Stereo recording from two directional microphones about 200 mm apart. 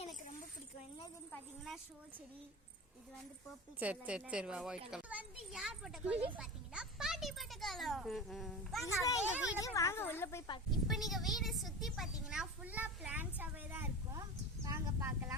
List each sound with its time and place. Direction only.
1.3 s a child's voice: centre (ahead or behind)
3.8 s a child's voice: 5° right (ahead or behind)
8.8 s speech: 15° left (ahead or behind)
10.8 s a woman's voice: centre (ahead or behind)